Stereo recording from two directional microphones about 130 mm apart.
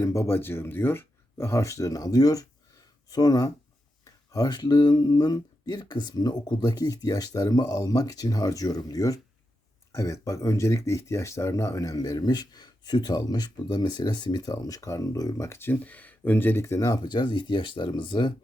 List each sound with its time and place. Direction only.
0.0 s speech: 20° left (ahead or behind); by 18.3 s 40° left (ahead or behind)